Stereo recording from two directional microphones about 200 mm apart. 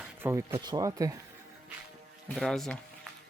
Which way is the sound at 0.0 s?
10° right (ahead or behind).